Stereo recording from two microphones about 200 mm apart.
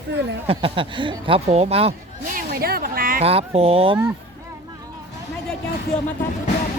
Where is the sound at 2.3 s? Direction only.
50° right (ahead or behind).